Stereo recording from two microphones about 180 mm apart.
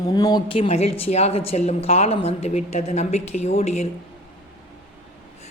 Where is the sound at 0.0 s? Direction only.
20° left (ahead or behind); by 3.8 s 35° left (ahead or behind).